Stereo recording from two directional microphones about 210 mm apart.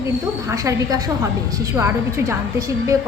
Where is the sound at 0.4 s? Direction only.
15° right (ahead or behind).